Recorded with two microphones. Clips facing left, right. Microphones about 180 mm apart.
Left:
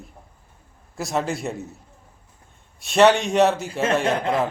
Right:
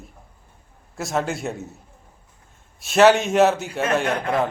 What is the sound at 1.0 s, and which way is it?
Speech, centre (ahead or behind).